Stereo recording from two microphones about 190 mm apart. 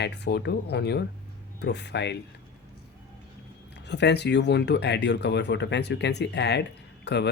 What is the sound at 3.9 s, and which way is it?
Speech, 65° left (ahead or behind).